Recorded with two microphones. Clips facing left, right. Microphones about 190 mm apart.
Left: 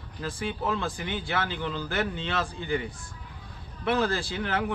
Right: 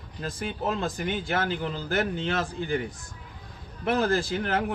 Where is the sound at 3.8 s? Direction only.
45° right (ahead or behind).